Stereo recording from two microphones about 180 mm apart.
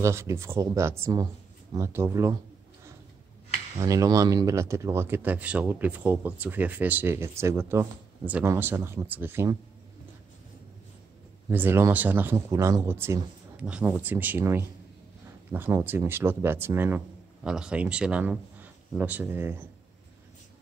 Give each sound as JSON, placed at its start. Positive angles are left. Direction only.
{"t": 0.0, "sound": "speech", "side_deg": -15}
{"t": 3.8, "sound": "speech", "side_deg": -20}
{"t": 11.5, "sound": "speech", "side_deg": -10}